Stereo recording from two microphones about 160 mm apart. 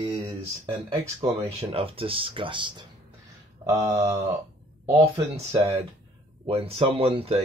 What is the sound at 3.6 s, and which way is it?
Speech, 20° right (ahead or behind).